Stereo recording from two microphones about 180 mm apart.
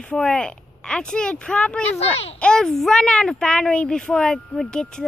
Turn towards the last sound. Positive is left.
turn(degrees=5)  # may be behind; listen again after turning